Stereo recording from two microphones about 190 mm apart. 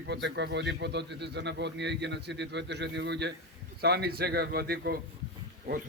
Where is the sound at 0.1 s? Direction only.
65° right (ahead or behind).